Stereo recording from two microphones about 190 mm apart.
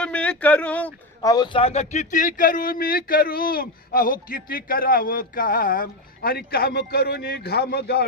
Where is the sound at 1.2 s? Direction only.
20° left (ahead or behind).